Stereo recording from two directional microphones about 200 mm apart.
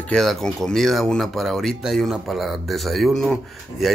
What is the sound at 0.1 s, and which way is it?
A man's voice, centre (ahead or behind).